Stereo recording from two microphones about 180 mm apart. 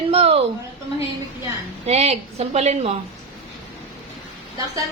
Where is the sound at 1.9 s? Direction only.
35° right (ahead or behind).